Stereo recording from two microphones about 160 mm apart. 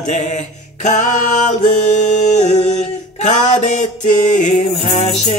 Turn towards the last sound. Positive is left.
turn(degrees=50)  # may be behind; listen again after turning